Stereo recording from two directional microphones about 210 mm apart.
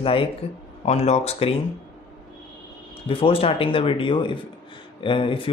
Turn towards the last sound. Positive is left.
turn(degrees=25)  # may be behind; listen again after turning